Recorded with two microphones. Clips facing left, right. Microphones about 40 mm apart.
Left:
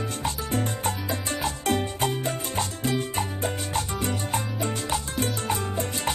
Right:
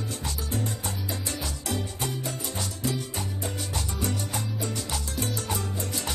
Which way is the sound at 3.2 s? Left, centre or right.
Left.